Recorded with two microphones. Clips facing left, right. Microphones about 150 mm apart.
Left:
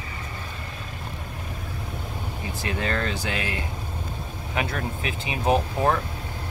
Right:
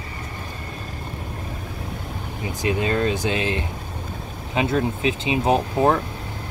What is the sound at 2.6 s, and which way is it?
Speech, 20° right (ahead or behind).